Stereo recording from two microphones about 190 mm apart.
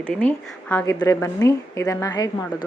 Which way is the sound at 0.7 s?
15° left (ahead or behind).